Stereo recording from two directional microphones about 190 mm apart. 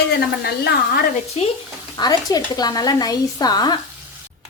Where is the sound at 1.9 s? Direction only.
20° left (ahead or behind).